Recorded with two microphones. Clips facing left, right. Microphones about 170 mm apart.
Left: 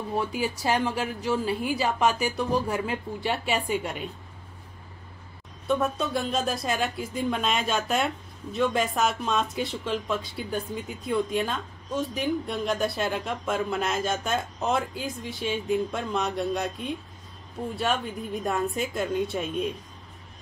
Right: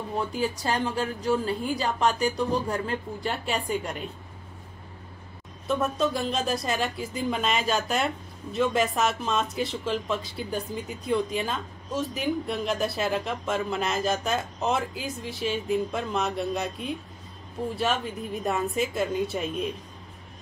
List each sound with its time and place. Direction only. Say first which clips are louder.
0.3 s a woman's voice: left 1 dB; 10° left (ahead or behind)
5.7 s speech: even; centre (ahead or behind)